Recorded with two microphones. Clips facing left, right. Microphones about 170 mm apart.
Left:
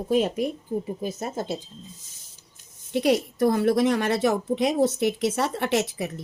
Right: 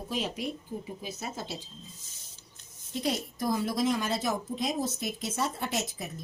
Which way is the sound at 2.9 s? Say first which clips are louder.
Left 10 dB; 70° left (ahead or behind).